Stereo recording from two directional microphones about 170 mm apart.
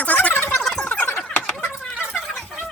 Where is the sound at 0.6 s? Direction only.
5° left (ahead or behind).